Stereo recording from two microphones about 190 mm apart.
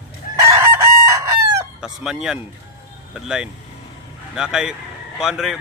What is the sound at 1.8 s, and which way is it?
Speech, centre (ahead or behind).